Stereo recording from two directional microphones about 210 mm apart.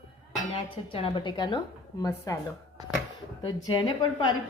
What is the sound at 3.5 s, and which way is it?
Speech, 20° left (ahead or behind).